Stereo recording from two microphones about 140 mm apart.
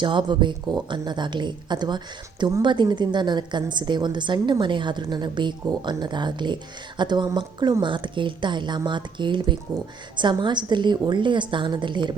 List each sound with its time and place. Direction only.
0.0 s a woman's voice: 35° right (ahead or behind)